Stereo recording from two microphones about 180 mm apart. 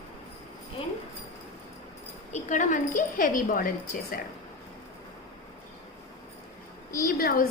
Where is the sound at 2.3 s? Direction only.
45° left (ahead or behind).